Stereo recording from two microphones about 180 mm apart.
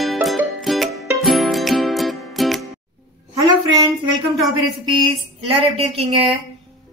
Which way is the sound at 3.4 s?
25° right (ahead or behind).